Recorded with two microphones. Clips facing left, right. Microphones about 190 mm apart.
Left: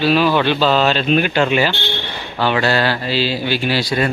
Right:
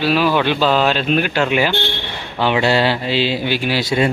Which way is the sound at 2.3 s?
20° right (ahead or behind).